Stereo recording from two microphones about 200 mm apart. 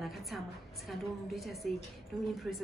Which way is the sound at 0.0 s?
Centre (ahead or behind).